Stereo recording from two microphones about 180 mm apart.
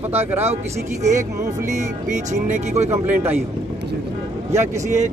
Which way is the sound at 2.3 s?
40° right (ahead or behind).